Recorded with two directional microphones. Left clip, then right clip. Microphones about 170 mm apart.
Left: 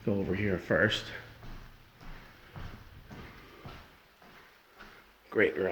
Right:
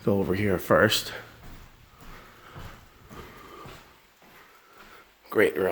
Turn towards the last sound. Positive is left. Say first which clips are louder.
# right 5 dB
turn(degrees=-45)  # may be behind; listen again after turning